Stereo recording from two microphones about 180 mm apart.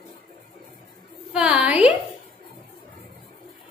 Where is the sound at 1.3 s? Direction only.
5° right (ahead or behind).